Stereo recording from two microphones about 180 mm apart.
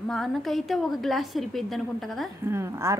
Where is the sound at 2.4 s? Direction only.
15° right (ahead or behind).